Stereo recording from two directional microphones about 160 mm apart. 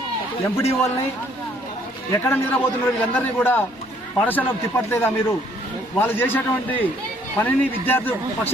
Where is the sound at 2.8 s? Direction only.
10° left (ahead or behind).